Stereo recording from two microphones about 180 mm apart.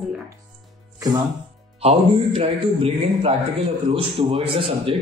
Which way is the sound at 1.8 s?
35° right (ahead or behind).